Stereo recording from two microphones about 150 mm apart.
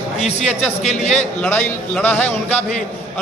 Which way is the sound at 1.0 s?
5° left (ahead or behind).